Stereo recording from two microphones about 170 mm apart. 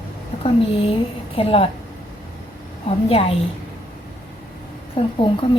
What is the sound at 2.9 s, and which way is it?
Speech, 35° left (ahead or behind).